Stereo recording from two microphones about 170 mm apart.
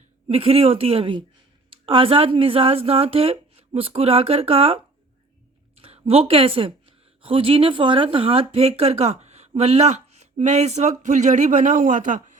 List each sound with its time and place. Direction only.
0.3 s a woman's voice: 35° right (ahead or behind)